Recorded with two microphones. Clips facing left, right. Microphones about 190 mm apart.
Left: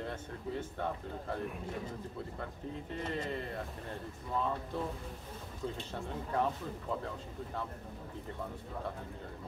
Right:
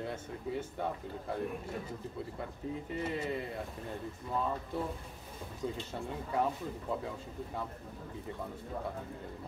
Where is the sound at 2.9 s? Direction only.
10° right (ahead or behind).